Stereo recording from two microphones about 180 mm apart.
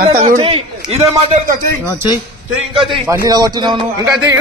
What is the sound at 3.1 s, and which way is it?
A man's voice, 20° right (ahead or behind).